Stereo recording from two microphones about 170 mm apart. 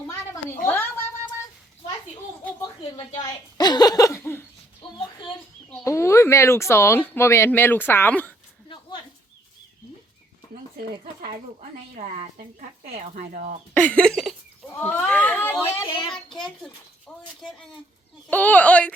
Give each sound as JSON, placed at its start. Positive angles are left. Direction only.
{"t": 0.1, "sound": "a sound", "side_deg": 15}
{"t": 2.4, "sound": "a sound", "side_deg": 10}
{"t": 3.2, "sound": "a woman's voice", "side_deg": 25}
{"t": 5.8, "sound": "speech", "side_deg": 15}
{"t": 11.9, "sound": "a woman's voice", "side_deg": -40}
{"t": 13.7, "sound": "a child's voice", "side_deg": 10}
{"t": 14.7, "sound": "speech", "side_deg": 10}
{"t": 15.9, "sound": "a woman's voice", "side_deg": 30}
{"t": 16.1, "sound": "a child's voice", "side_deg": 0}